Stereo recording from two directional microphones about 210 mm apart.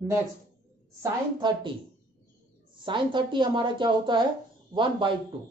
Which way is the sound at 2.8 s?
20° right (ahead or behind).